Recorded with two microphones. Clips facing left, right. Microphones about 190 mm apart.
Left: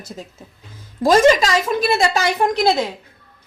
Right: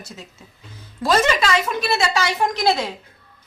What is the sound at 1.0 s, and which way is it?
A woman's voice, 45° left (ahead or behind).